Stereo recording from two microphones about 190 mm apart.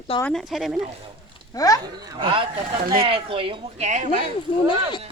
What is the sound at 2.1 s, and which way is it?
Speech, 25° right (ahead or behind).